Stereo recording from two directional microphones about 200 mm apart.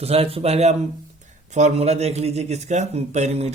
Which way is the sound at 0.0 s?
30° right (ahead or behind).